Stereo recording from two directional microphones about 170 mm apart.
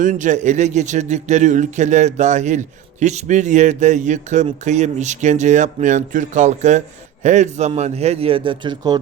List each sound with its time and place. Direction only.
0.0 s speech: 50° right (ahead or behind); by 9.0 s 25° right (ahead or behind)